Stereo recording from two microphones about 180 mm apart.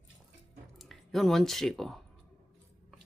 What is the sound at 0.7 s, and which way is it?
Speech, centre (ahead or behind).